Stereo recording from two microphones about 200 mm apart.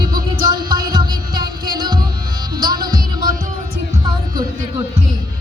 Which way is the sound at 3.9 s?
20° right (ahead or behind).